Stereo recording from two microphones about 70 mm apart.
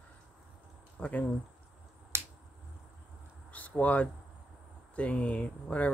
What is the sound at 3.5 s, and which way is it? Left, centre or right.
Speech, left.